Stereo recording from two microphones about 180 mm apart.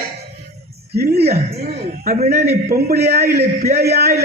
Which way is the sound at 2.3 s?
55° right (ahead or behind).